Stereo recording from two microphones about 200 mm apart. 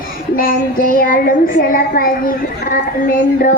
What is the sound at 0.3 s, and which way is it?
A woman's voice, 45° left (ahead or behind).